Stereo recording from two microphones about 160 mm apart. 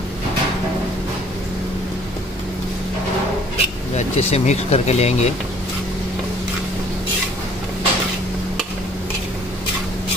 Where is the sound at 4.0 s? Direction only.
40° left (ahead or behind).